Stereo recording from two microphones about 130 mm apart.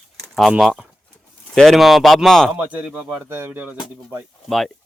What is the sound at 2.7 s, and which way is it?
Speech, 5° right (ahead or behind).